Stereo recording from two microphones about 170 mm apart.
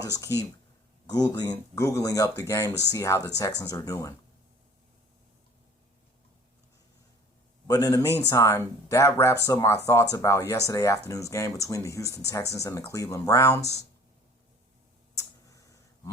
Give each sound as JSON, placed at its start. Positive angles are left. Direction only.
{"t": 0.0, "sound": "speech", "side_deg": 20}
{"t": 7.7, "sound": "speech", "side_deg": 20}